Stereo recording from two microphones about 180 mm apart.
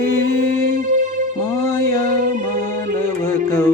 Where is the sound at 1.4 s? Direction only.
15° left (ahead or behind).